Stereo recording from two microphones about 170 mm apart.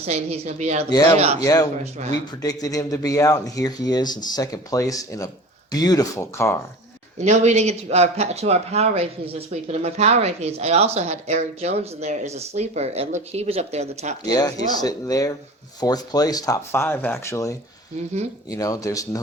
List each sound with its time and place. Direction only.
0.0 s speech: 40° right (ahead or behind)
1.4 s speech: 20° left (ahead or behind)
2.0 s speech: 40° right (ahead or behind)
2.4 s speech: 20° left (ahead or behind)
7.2 s speech: 40° right (ahead or behind)
14.3 s speech: 20° left (ahead or behind)